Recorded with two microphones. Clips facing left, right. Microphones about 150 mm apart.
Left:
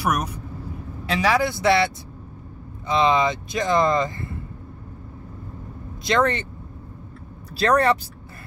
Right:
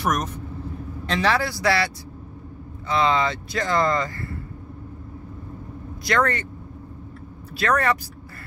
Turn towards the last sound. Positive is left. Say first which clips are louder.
# left 3 dB
turn(degrees=30)  # may be behind; listen again after turning